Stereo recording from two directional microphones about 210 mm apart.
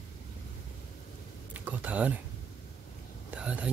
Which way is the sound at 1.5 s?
10° right (ahead or behind).